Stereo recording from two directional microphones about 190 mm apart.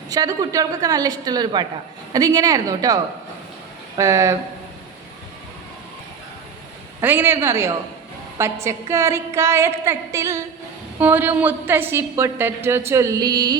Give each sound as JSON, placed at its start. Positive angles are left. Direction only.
{"t": 0.1, "sound": "a woman's voice", "side_deg": -20}
{"t": 7.0, "sound": "a woman's voice", "side_deg": -10}